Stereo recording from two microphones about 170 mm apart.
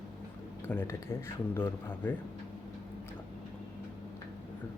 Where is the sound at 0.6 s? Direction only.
15° left (ahead or behind).